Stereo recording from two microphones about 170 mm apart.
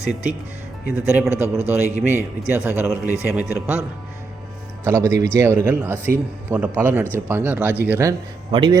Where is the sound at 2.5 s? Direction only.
15° right (ahead or behind).